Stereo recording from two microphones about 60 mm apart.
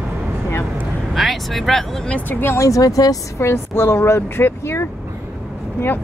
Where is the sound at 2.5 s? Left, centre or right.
Left.